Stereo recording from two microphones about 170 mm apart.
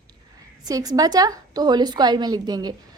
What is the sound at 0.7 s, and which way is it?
A woman's voice, 20° right (ahead or behind).